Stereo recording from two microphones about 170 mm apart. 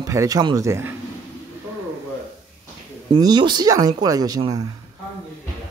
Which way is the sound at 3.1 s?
25° right (ahead or behind).